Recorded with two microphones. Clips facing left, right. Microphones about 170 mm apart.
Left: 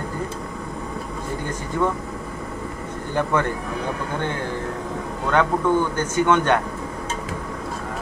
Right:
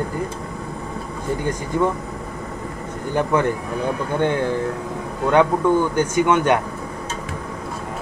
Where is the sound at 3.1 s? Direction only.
15° right (ahead or behind).